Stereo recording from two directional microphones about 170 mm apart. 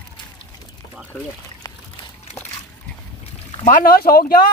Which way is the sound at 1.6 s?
20° left (ahead or behind).